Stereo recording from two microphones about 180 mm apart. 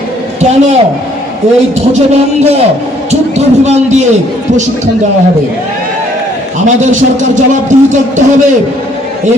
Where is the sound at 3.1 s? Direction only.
40° right (ahead or behind).